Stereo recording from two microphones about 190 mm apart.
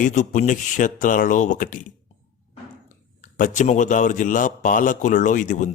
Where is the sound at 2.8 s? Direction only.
45° left (ahead or behind).